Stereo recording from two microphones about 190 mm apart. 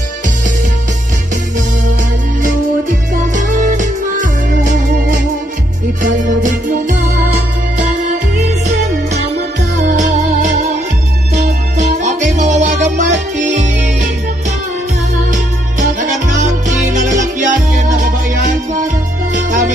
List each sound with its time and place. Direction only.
2.4 s music: 45° right (ahead or behind)
9.9 s music: 40° right (ahead or behind)
15.3 s music: 40° right (ahead or behind)